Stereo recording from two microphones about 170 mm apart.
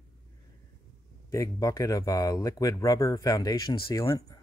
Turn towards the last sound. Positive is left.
turn(degrees=20)  # may be behind; listen again after turning